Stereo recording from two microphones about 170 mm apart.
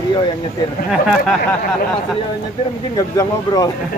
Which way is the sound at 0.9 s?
Centre (ahead or behind).